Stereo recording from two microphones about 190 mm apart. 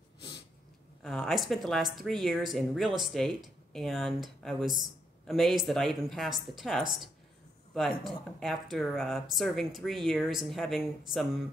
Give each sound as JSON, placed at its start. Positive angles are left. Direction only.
{"t": 1.0, "sound": "speech", "side_deg": 0}